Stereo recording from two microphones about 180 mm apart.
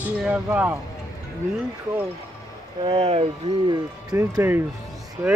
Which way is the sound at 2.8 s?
30° right (ahead or behind).